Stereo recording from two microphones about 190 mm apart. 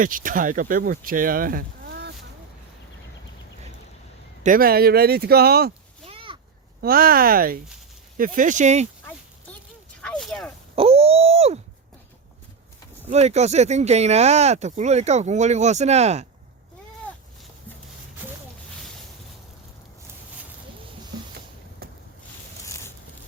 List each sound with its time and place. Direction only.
0.0 s speech: 45° right (ahead or behind)
4.4 s speech: 50° right (ahead or behind)
6.1 s a sound: 25° right (ahead or behind)
6.8 s speech: 50° right (ahead or behind)
10.0 s speech: 5° left (ahead or behind)
10.8 s groan: 30° right (ahead or behind)
13.1 s speech: 35° right (ahead or behind)
21.8 s boat: 50° right (ahead or behind)
22.6 s a sound: 15° left (ahead or behind)